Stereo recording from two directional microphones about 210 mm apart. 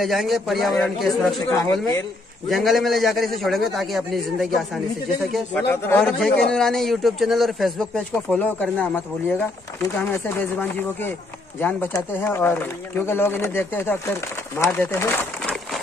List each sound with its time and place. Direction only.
0.0 s a man's voice: centre (ahead or behind)
1.6 s speech: 15° left (ahead or behind)
2.5 s a man's voice: centre (ahead or behind)